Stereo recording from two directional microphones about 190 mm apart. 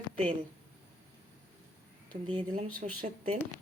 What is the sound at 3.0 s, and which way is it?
Speech, 40° right (ahead or behind).